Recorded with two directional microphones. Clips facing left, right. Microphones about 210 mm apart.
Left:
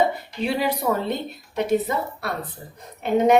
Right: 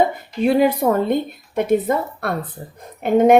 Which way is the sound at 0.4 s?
50° right (ahead or behind).